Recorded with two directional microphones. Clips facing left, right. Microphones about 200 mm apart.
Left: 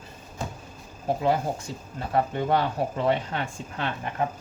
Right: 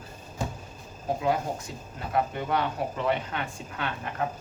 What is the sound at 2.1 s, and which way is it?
Speech, 35° left (ahead or behind).